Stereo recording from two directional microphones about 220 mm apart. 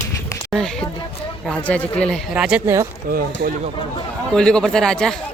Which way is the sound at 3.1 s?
45° right (ahead or behind).